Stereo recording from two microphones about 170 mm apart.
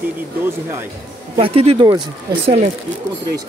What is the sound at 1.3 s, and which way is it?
Speech, 35° right (ahead or behind).